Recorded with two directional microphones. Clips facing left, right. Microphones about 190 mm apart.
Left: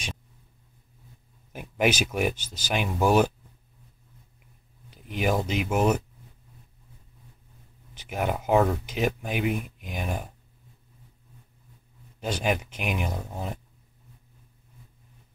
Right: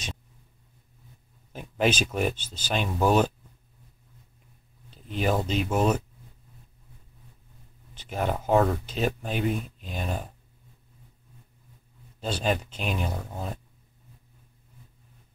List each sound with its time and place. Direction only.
1.5 s speech: 10° left (ahead or behind)
4.9 s speech: 10° left (ahead or behind)
7.9 s speech: 10° left (ahead or behind)
12.2 s speech: 10° left (ahead or behind)